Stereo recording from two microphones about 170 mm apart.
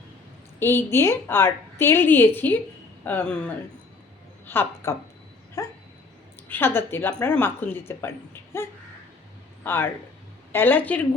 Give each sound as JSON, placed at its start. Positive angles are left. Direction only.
{"t": 0.6, "sound": "a woman's voice", "side_deg": 15}
{"t": 5.6, "sound": "dog", "side_deg": 20}
{"t": 6.5, "sound": "speech", "side_deg": 10}
{"t": 9.6, "sound": "speech", "side_deg": 15}